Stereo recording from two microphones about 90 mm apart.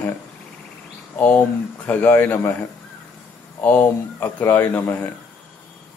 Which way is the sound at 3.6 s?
20° left (ahead or behind).